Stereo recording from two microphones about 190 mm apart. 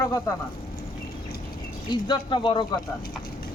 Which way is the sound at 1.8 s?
25° left (ahead or behind).